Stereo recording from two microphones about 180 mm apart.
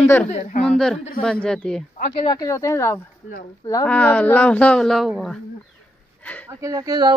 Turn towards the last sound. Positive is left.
turn(degrees=-20)  # may be behind; listen again after turning